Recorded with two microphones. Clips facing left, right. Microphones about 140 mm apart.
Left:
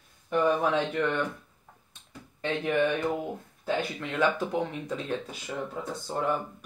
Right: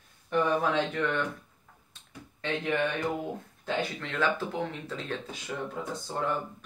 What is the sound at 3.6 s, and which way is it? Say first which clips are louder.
Speech: left 2 dB; 15° left (ahead or behind).